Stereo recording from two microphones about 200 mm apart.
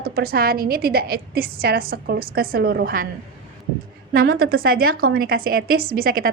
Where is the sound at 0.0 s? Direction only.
50° right (ahead or behind).